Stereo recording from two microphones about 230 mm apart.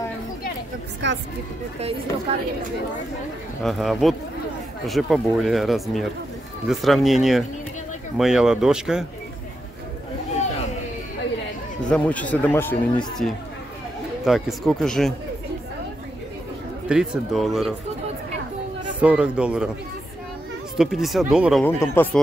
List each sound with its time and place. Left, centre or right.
1.0 s speech: right
3.6 s speech: centre
11.9 s speech: centre
16.8 s speech: centre
18.9 s speech: centre
20.7 s speech: centre
21.6 s speech: centre